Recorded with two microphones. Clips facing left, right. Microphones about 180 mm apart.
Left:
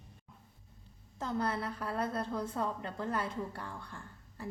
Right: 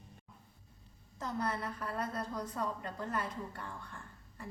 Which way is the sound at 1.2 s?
30° left (ahead or behind).